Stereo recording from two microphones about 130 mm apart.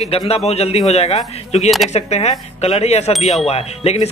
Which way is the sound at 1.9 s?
55° left (ahead or behind).